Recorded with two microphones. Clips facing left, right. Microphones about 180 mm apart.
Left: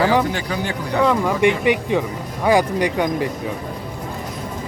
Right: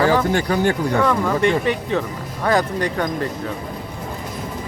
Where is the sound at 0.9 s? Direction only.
15° left (ahead or behind).